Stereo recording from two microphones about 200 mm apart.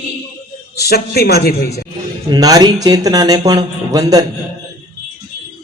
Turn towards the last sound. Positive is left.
turn(degrees=-20)  # may be behind; listen again after turning